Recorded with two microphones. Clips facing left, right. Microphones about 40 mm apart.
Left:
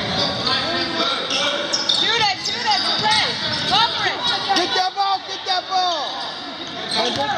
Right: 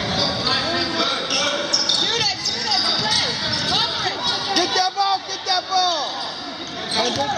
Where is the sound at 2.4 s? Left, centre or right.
Centre.